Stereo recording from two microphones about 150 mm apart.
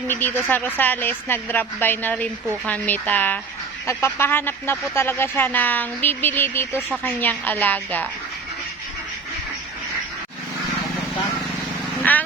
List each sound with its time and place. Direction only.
0.1 s a woman's voice: 10° left (ahead or behind)
12.1 s vehicle: 10° left (ahead or behind)